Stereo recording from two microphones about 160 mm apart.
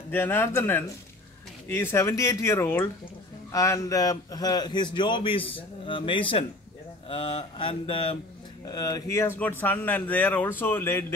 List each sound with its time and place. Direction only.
0.1 s a man's voice: 15° left (ahead or behind); by 5.5 s 35° left (ahead or behind)
5.9 s mantra: 30° left (ahead or behind)
8.6 s speech: 25° left (ahead or behind)